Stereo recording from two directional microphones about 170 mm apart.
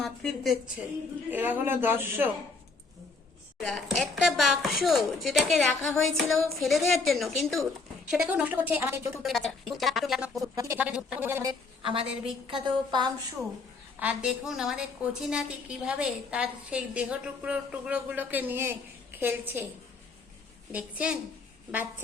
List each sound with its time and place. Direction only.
0.0 s a sound: centre (ahead or behind)
1.3 s a woman's voice: 10° right (ahead or behind)
3.6 s a woman's voice: centre (ahead or behind)
9.2 s a woman's voice: centre (ahead or behind)
10.5 s a woman's voice: 20° right (ahead or behind)
10.8 s a woman's voice: 10° right (ahead or behind)
11.8 s a woman's voice: 35° right (ahead or behind)
14.0 s a woman's voice: 5° right (ahead or behind)
20.7 s a woman's voice: 5° right (ahead or behind)